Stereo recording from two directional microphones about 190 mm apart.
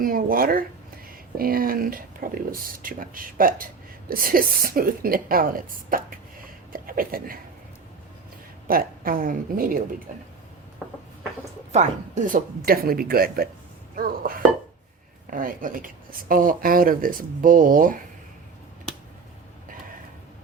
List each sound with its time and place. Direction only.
0.0 s speech: 50° right (ahead or behind)
8.6 s speech: 50° right (ahead or behind)
10.8 s a sound: 5° right (ahead or behind)
11.7 s speech: 40° right (ahead or behind)
13.9 s a sound: 50° right (ahead or behind)
15.3 s speech: 45° right (ahead or behind)